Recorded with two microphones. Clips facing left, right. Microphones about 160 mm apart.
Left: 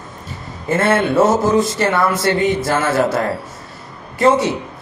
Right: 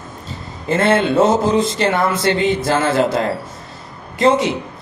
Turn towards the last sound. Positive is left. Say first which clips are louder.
# even
turn(degrees=-20)  # may be behind; listen again after turning